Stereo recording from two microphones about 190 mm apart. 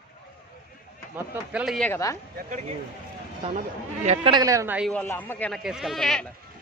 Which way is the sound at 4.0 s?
40° right (ahead or behind).